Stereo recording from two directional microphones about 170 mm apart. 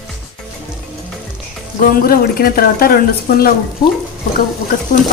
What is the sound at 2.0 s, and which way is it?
Speech, 60° left (ahead or behind).